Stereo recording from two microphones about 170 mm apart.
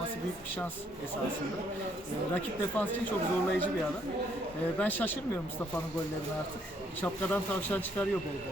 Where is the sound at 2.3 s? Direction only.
10° left (ahead or behind).